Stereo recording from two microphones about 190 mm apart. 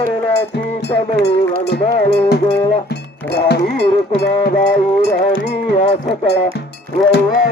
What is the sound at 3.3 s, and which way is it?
Music, 60° left (ahead or behind).